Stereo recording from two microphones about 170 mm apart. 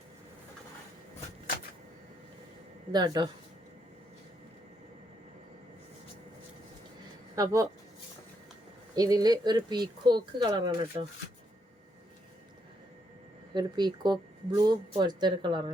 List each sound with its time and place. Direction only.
2.9 s speech: 25° right (ahead or behind)
7.3 s speech: 20° right (ahead or behind)
9.0 s speech: 20° right (ahead or behind)
13.5 s speech: 25° right (ahead or behind)